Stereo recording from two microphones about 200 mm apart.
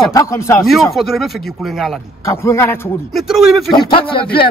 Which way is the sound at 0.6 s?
Centre (ahead or behind).